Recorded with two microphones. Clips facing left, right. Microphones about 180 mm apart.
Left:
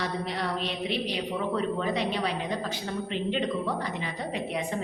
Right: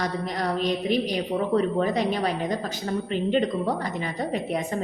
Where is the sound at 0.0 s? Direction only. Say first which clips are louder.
Right 3 dB; 45° right (ahead or behind).